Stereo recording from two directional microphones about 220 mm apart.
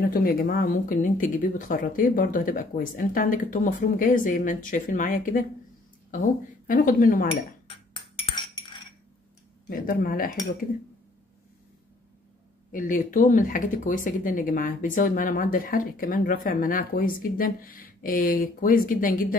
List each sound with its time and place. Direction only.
0.0 s speech: 45° left (ahead or behind)
6.7 s speech: 40° left (ahead or behind)
7.7 s a sound: 25° left (ahead or behind)
9.7 s speech: 40° left (ahead or behind)
12.7 s speech: 35° left (ahead or behind)